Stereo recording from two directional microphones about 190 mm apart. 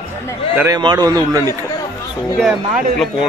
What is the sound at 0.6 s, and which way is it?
Speech, 20° right (ahead or behind).